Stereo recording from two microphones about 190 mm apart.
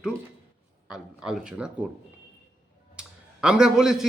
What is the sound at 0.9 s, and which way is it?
Speech, 5° right (ahead or behind).